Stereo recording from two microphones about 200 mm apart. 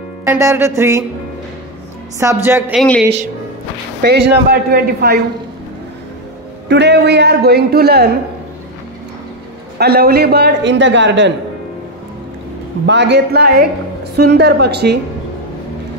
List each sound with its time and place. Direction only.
0.3 s music: 15° right (ahead or behind)
2.1 s music: 15° right (ahead or behind)
2.7 s a woman's voice: centre (ahead or behind)
4.0 s speech: 55° right (ahead or behind)
6.7 s speech: 60° right (ahead or behind)
9.8 s speech: 50° right (ahead or behind)
12.8 s speech: 60° right (ahead or behind)